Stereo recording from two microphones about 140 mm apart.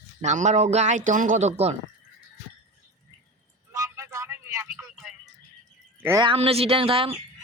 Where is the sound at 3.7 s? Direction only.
20° right (ahead or behind).